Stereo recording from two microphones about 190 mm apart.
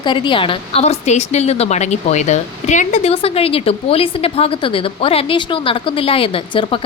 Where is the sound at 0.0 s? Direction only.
25° left (ahead or behind).